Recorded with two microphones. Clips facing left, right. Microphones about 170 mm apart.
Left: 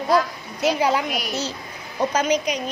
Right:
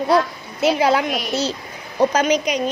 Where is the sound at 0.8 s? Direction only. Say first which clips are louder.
Right 4 dB; 90° right.